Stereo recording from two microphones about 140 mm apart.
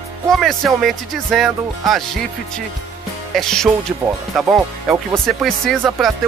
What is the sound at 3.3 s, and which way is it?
Speech, 5° left (ahead or behind).